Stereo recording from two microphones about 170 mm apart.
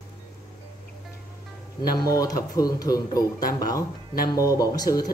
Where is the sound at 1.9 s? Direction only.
20° left (ahead or behind).